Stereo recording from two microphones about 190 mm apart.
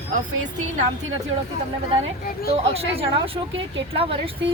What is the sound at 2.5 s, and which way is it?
Speech, 30° right (ahead or behind).